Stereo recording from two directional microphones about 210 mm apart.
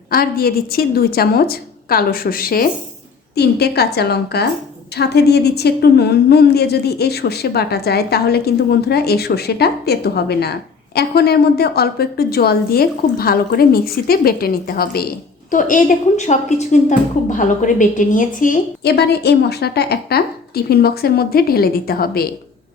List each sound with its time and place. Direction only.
0.1 s a woman's voice: 45° left (ahead or behind)